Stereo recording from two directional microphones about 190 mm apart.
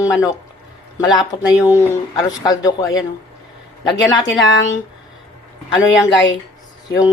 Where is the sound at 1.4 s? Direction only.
10° right (ahead or behind).